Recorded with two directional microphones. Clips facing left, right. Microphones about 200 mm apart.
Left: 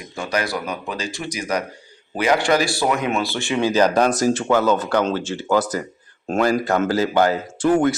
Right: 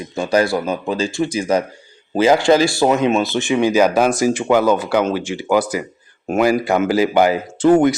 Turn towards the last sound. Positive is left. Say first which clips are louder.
# right 5 dB
turn(degrees=-20)  # may be behind; listen again after turning